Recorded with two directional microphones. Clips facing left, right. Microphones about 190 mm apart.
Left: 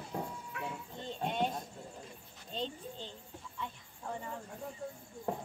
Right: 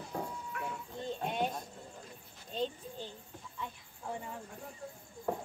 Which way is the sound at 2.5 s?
5° right (ahead or behind).